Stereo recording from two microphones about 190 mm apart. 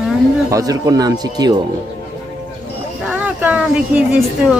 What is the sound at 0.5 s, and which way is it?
Speech, 20° right (ahead or behind).